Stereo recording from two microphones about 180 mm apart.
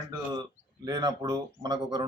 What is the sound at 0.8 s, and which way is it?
Speech, 20° right (ahead or behind).